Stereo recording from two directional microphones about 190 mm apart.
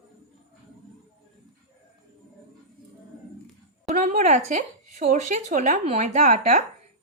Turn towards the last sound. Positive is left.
turn(degrees=-40)  # may be behind; listen again after turning